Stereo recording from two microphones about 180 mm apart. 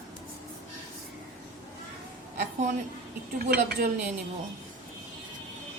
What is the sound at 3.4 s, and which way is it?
Speech, 60° right (ahead or behind).